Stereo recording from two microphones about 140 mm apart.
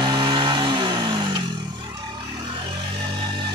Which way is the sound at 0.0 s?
30° right (ahead or behind).